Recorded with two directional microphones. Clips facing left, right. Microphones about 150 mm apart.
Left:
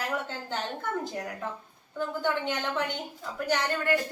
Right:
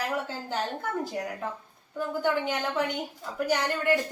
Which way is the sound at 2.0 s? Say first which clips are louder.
Right 2 dB; 5° right (ahead or behind).